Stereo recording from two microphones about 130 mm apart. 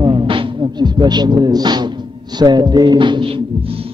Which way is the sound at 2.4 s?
35° right (ahead or behind).